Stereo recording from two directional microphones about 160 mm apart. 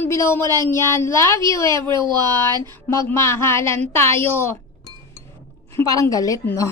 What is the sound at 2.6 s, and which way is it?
Speech, 15° left (ahead or behind).